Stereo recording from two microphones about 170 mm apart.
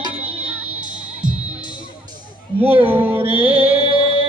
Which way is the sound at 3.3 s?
35° right (ahead or behind).